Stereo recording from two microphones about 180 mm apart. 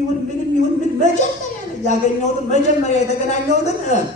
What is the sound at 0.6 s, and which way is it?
Speech, 40° left (ahead or behind).